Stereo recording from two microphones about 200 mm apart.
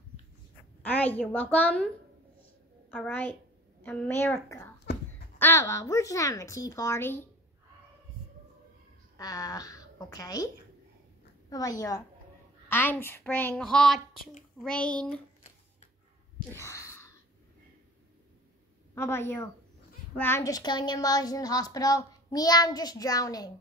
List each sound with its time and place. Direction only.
0.9 s speech: 10° left (ahead or behind)
2.9 s speech: 10° left (ahead or behind)
9.1 s a woman's voice: 20° left (ahead or behind)
16.5 s a sound: 15° left (ahead or behind)
18.9 s a woman's voice: 10° left (ahead or behind)